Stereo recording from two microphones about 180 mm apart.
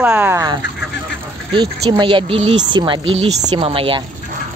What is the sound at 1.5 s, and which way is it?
Speech, 25° right (ahead or behind).